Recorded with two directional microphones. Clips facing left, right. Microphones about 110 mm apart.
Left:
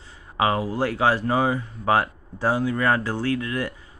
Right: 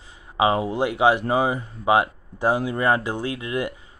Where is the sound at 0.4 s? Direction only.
20° right (ahead or behind).